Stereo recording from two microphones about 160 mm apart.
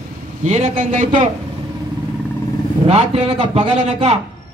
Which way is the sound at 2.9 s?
40° right (ahead or behind).